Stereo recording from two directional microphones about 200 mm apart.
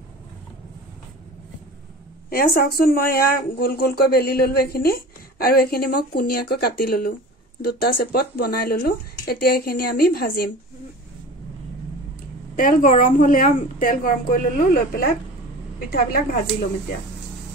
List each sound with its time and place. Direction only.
2.2 s speech: 45° left (ahead or behind)
12.5 s speech: 40° left (ahead or behind)